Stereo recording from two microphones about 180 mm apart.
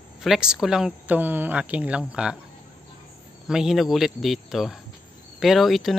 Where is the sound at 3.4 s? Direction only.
5° right (ahead or behind).